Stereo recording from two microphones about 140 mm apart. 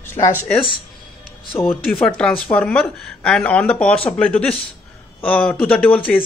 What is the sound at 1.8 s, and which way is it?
Speech, 5° left (ahead or behind).